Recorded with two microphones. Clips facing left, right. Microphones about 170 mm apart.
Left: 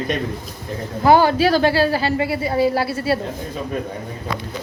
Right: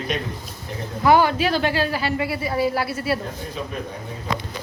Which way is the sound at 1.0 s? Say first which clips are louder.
Left 3 dB; 30° left (ahead or behind).